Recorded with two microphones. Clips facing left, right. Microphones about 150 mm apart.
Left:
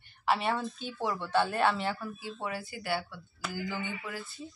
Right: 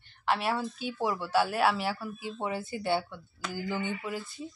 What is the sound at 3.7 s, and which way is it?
Speech, 20° right (ahead or behind).